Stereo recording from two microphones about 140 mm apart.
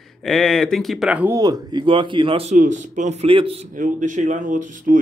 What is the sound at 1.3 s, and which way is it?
Speech, 30° right (ahead or behind).